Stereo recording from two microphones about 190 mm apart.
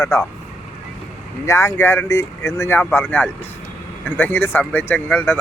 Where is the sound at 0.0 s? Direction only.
15° left (ahead or behind).